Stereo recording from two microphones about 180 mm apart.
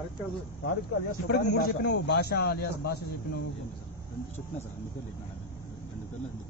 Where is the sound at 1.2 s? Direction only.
60° left (ahead or behind).